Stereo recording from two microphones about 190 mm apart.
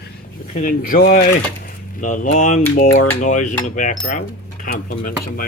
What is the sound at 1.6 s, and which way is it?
Speech, 45° left (ahead or behind).